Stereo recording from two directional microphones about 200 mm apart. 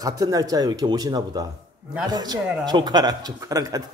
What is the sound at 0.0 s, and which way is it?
A man's voice, 15° right (ahead or behind).